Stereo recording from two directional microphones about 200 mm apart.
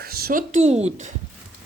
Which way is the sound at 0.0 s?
50° right (ahead or behind).